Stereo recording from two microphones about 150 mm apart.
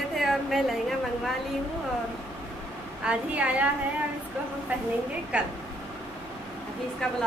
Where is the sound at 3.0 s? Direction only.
10° right (ahead or behind).